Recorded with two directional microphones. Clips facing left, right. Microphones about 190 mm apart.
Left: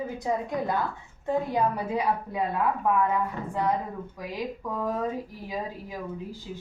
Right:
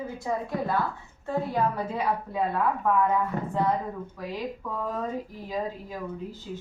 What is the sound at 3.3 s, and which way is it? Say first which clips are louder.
Speech: right 4 dB; 45° right (ahead or behind).